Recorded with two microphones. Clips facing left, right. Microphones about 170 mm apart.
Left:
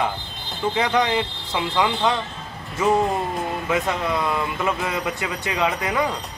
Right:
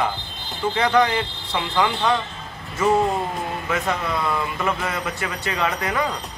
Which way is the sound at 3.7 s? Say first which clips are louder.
Left 1 dB; 20° left (ahead or behind).